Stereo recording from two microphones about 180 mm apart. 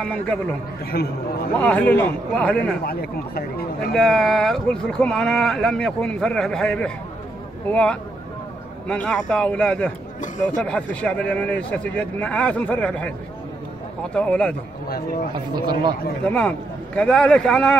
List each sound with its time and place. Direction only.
0.0 s speech: 5° left (ahead or behind)
0.9 s speech: 60° left (ahead or behind)
1.6 s speech: 10° left (ahead or behind)
2.8 s speech: 60° left (ahead or behind)
3.9 s speech: 5° left (ahead or behind)
14.1 s speech: 5° left (ahead or behind)
15.3 s speech: 25° right (ahead or behind)
16.3 s speech: 5° left (ahead or behind)